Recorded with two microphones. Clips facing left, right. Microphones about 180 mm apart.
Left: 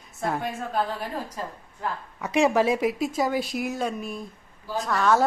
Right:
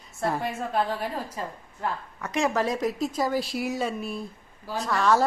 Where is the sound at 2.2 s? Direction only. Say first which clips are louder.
Left 5 dB; 15° left (ahead or behind).